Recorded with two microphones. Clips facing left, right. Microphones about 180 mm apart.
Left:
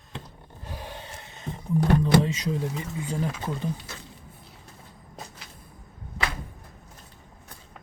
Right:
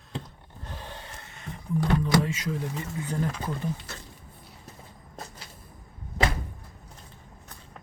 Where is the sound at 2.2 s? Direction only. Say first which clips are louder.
Left 3 dB; 20° left (ahead or behind).